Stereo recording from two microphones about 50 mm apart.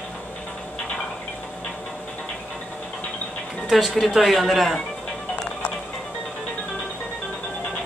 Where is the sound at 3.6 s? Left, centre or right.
Centre.